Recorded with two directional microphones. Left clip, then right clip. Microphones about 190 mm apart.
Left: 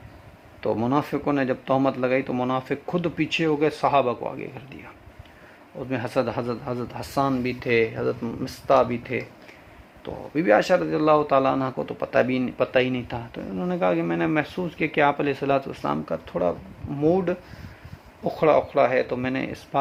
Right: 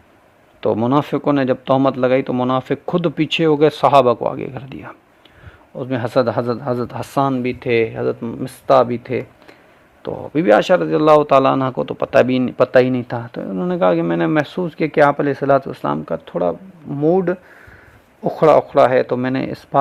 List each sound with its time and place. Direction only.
0.6 s a man's voice: 40° right (ahead or behind)